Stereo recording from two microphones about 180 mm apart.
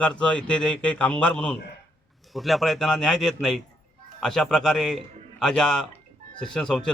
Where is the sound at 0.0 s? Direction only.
5° left (ahead or behind).